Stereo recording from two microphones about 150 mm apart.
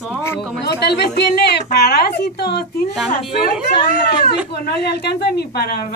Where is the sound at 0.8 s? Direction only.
90° left.